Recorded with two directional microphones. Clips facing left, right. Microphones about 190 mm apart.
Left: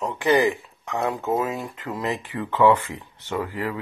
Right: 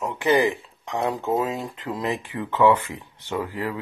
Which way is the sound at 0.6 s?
20° right (ahead or behind).